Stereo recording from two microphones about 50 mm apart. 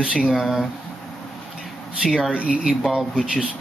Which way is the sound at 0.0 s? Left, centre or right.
Right.